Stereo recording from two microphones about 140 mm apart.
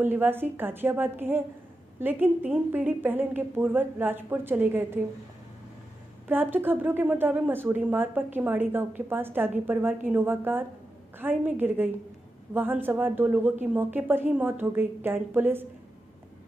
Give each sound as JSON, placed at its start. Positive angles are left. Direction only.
{"t": 0.0, "sound": "a woman's voice", "side_deg": -15}
{"t": 6.2, "sound": "a woman's voice", "side_deg": -15}